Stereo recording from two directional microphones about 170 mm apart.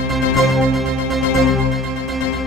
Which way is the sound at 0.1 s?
Centre (ahead or behind).